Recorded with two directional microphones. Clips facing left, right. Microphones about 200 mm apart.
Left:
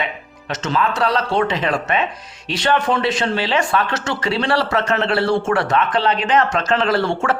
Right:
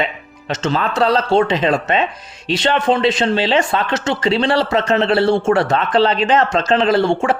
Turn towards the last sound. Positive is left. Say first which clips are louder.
# right 4 dB
turn(degrees=-15)  # may be behind; listen again after turning